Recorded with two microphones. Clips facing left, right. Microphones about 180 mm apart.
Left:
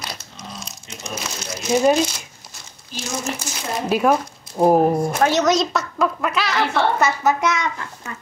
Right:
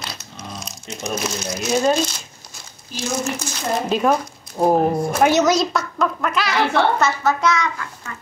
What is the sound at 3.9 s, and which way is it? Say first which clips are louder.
Speech: left 3 dB; 5° left (ahead or behind).